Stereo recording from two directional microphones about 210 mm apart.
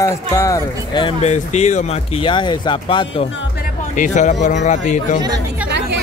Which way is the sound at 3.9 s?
35° left (ahead or behind).